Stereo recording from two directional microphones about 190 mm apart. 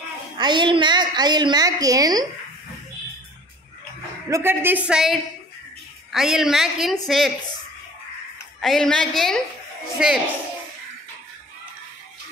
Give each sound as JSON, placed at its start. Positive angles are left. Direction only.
{"t": 0.4, "sound": "a woman's voice", "side_deg": -25}
{"t": 4.3, "sound": "a woman's voice", "side_deg": -10}
{"t": 8.5, "sound": "a woman's voice", "side_deg": 0}